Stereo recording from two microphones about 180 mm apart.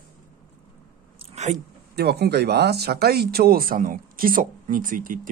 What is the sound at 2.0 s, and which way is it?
Speech, 65° right (ahead or behind).